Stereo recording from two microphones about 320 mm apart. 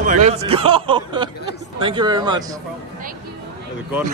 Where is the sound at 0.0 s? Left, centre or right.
Right.